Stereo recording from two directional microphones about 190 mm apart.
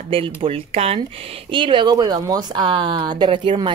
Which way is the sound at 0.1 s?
30° right (ahead or behind).